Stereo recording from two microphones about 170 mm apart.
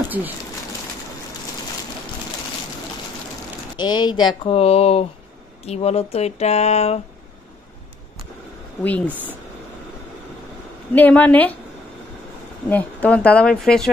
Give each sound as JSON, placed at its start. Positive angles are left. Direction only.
{"t": 3.7, "sound": "speech", "side_deg": 25}
{"t": 8.8, "sound": "speech", "side_deg": 10}
{"t": 11.0, "sound": "speech", "side_deg": 10}
{"t": 12.6, "sound": "speech", "side_deg": 10}